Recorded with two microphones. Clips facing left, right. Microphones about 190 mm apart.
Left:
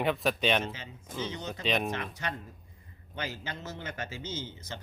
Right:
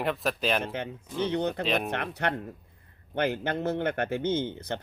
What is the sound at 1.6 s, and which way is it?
Speech, centre (ahead or behind).